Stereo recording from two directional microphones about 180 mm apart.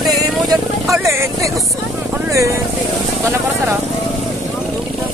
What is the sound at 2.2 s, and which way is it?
Speech, 15° right (ahead or behind).